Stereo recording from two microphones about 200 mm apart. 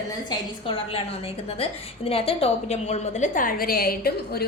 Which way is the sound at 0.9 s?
30° left (ahead or behind).